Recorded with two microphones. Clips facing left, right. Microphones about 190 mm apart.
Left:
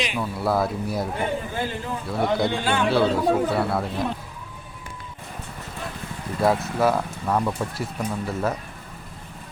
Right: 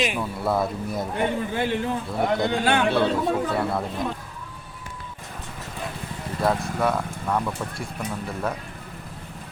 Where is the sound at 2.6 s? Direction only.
60° right (ahead or behind).